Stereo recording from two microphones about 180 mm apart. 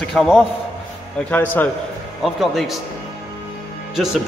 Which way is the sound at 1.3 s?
10° left (ahead or behind).